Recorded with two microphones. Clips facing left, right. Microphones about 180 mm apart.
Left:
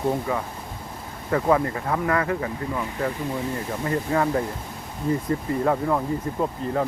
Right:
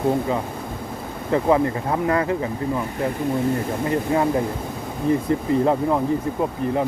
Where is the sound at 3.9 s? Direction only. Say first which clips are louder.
Right 2 dB; 20° right (ahead or behind).